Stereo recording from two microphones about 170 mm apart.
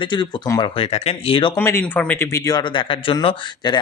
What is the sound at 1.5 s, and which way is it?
Speech, 15° left (ahead or behind).